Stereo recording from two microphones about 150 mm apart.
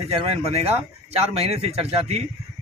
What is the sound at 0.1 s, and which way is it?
Speech, 40° right (ahead or behind).